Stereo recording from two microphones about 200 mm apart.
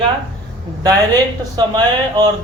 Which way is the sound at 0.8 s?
20° right (ahead or behind).